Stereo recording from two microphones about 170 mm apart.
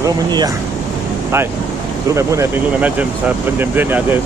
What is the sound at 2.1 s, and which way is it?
Speech, 15° right (ahead or behind).